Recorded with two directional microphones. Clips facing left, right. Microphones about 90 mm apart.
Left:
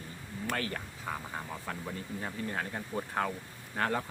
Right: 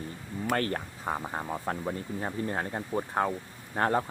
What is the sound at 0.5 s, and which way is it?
Speech, 45° right (ahead or behind).